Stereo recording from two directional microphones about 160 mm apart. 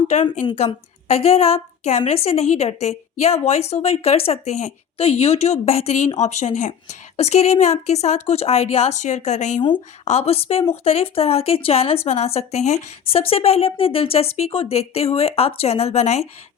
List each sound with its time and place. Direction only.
0.1 s a woman's voice: 45° left (ahead or behind)